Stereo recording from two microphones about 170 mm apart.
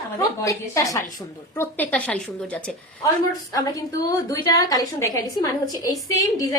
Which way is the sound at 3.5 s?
20° left (ahead or behind).